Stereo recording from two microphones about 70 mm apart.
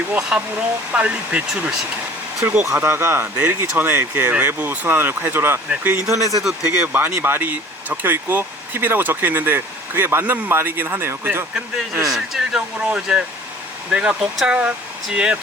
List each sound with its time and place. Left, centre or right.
0.2 s speech: centre
2.8 s speech: right
3.3 s speech: right
6.1 s speech: right
6.8 s speech: right
12.0 s speech: centre